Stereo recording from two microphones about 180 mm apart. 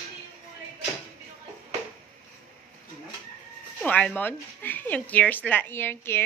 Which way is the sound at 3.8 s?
5° left (ahead or behind).